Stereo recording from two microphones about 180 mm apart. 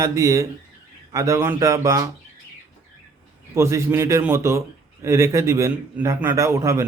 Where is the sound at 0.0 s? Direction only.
15° right (ahead or behind).